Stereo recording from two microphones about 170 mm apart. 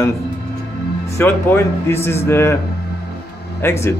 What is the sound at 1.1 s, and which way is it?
Speech, 15° left (ahead or behind).